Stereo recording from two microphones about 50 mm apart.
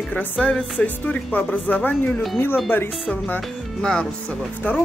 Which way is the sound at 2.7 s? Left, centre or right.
Left.